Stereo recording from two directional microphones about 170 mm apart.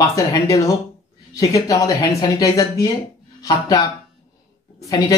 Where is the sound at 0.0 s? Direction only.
20° left (ahead or behind).